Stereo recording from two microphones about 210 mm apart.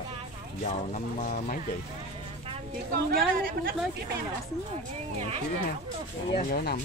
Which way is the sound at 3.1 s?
45° right (ahead or behind).